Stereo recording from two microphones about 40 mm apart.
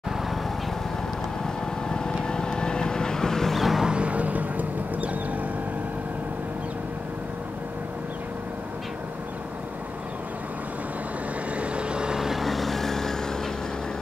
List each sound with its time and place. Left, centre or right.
1.4 s vehicle: centre
3.8 s vehicle: right
11.5 s vehicle: right
12.2 s vehicle: centre